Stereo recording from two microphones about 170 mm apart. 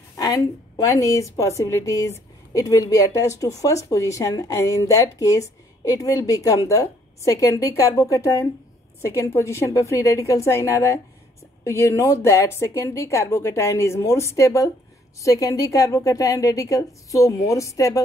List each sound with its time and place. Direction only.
0.2 s a woman's voice: 20° left (ahead or behind)